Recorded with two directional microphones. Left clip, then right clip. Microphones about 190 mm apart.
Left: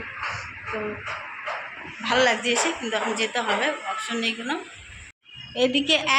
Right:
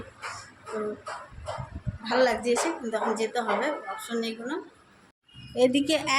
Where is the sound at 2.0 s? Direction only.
5° right (ahead or behind).